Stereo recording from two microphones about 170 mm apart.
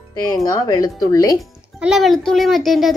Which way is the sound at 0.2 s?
20° left (ahead or behind).